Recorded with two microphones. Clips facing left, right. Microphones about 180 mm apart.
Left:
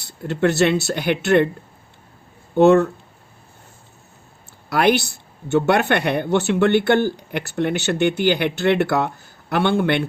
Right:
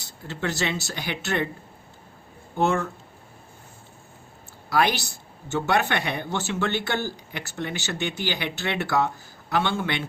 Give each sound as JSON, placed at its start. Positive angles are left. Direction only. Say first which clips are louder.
{"t": 0.0, "sound": "speech", "louder": "left 11 dB", "side_deg": 60}
{"t": 2.6, "sound": "speech", "louder": "left 11 dB", "side_deg": 65}
{"t": 4.7, "sound": "speech", "louder": "left 6 dB", "side_deg": 60}